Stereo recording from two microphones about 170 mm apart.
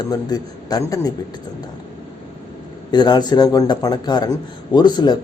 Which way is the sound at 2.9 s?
25° left (ahead or behind).